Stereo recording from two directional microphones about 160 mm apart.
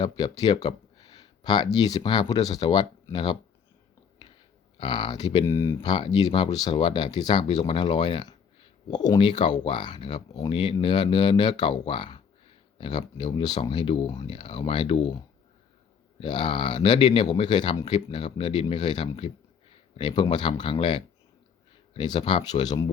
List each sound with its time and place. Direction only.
0.0 s speech: 25° left (ahead or behind)
4.8 s speech: 25° left (ahead or behind)
16.2 s speech: 30° left (ahead or behind)